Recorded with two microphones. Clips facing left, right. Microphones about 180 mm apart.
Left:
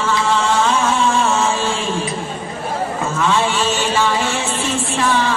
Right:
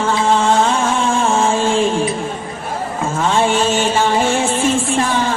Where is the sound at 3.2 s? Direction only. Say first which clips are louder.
Right 3 dB; 50° right (ahead or behind).